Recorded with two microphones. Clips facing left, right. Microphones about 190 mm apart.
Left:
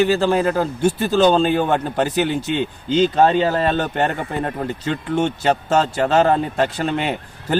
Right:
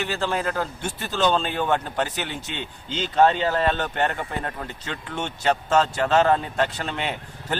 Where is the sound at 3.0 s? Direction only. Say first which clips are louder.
Left 4 dB; 35° left (ahead or behind).